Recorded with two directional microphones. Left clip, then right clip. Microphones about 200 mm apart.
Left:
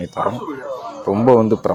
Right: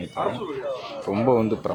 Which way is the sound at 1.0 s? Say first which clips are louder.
Left 8 dB; 15° left (ahead or behind).